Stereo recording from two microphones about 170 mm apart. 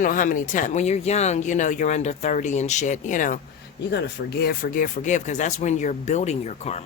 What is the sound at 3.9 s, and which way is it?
Speech, 85° left.